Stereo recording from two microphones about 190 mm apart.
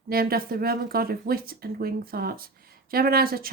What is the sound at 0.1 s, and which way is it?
Speech, 50° right (ahead or behind).